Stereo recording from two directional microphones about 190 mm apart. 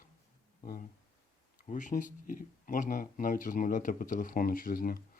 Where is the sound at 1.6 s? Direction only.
40° left (ahead or behind).